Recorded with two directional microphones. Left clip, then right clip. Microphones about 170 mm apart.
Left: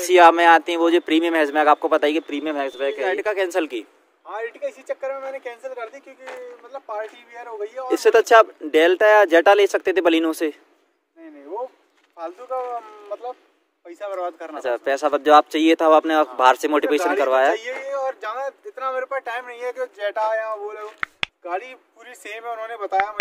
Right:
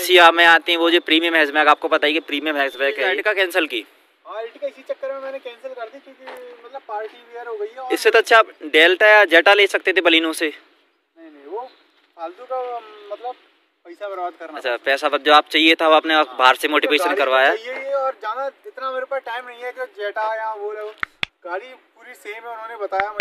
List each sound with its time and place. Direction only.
0.0 s speech: 10° left (ahead or behind)
2.2 s speech: 5° left (ahead or behind)
3.1 s speech: 10° left (ahead or behind)
5.1 s speech: 5° right (ahead or behind)
6.9 s speech: 25° left (ahead or behind)
12.2 s speech: 5° left (ahead or behind)
14.5 s speech: 30° left (ahead or behind)
19.6 s speech: 30° left (ahead or behind)